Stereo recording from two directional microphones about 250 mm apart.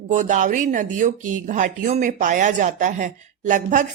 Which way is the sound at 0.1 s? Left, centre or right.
Right.